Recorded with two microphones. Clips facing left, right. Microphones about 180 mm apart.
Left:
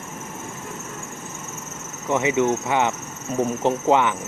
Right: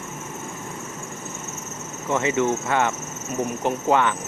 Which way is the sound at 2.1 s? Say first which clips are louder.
Left 2 dB; 15° left (ahead or behind).